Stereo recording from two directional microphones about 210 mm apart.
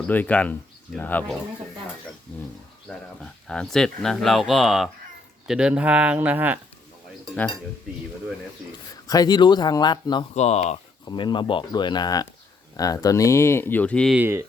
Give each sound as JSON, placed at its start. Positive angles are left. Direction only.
{"t": 0.1, "sound": "speech", "side_deg": 5}
{"t": 2.8, "sound": "speech", "side_deg": 5}
{"t": 7.3, "sound": "speech", "side_deg": 5}
{"t": 9.0, "sound": "speech", "side_deg": 20}
{"t": 10.3, "sound": "speech", "side_deg": 30}
{"t": 11.0, "sound": "speech", "side_deg": 20}
{"t": 14.2, "sound": "speech", "side_deg": -10}